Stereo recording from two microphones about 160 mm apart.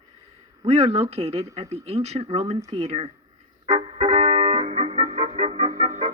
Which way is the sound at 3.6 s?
40° right (ahead or behind).